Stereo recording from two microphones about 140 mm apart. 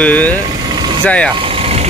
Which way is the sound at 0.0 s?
10° left (ahead or behind).